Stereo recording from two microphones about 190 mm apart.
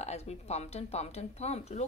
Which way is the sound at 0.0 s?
35° left (ahead or behind).